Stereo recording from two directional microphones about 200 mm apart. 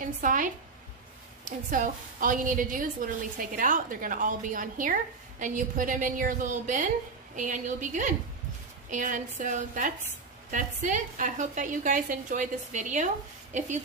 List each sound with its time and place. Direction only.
0.0 s a woman's voice: 40° right (ahead or behind)